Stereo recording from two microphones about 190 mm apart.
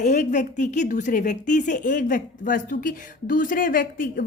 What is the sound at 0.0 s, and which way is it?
A woman's voice, 40° left (ahead or behind).